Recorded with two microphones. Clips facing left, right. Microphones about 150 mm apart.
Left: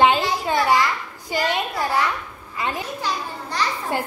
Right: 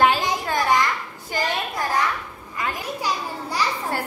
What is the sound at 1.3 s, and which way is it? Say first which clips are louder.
Speech: left 2 dB; 15° left (ahead or behind).